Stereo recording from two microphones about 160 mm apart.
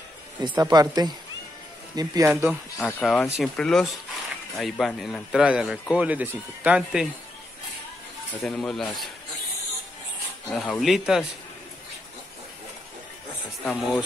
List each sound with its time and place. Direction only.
0.4 s speech: 25° right (ahead or behind)
2.8 s a man's voice: 5° left (ahead or behind)
8.4 s a man's voice: 5° left (ahead or behind)
10.5 s a man's voice: 5° left (ahead or behind)
13.7 s a man's voice: centre (ahead or behind)